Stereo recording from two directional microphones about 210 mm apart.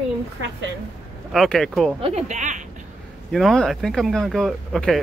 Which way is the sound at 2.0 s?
35° right (ahead or behind).